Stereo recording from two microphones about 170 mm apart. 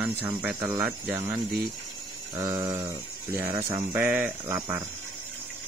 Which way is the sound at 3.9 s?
10° right (ahead or behind).